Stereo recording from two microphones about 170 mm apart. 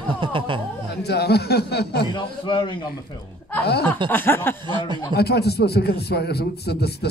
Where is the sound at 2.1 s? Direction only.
25° left (ahead or behind).